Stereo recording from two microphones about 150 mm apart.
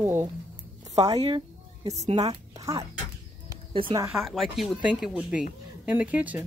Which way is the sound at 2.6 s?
20° right (ahead or behind).